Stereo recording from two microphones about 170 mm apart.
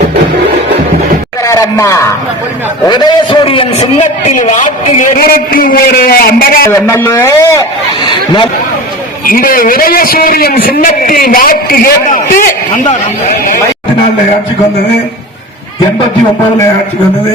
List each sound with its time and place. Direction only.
1.5 s a man's voice: 20° left (ahead or behind); by 6.7 s 60° left (ahead or behind)
6.7 s a man's voice: 15° left (ahead or behind)
9.2 s a man's voice: 55° left (ahead or behind)